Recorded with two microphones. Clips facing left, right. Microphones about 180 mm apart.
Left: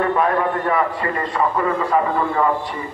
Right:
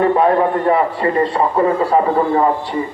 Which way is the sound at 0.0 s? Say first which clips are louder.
Right 5 dB; 30° right (ahead or behind).